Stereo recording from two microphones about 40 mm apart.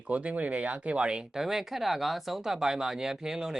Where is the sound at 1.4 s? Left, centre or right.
Centre.